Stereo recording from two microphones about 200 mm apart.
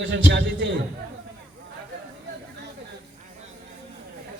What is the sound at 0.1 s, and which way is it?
Speech, 65° right (ahead or behind).